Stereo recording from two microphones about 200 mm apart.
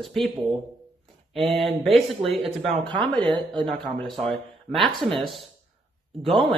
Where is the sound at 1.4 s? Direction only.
Centre (ahead or behind).